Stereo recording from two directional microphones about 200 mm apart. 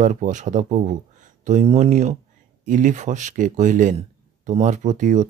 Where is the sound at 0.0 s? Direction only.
40° right (ahead or behind).